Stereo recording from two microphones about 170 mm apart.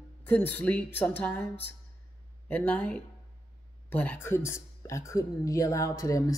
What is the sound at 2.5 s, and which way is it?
Speech, 10° left (ahead or behind).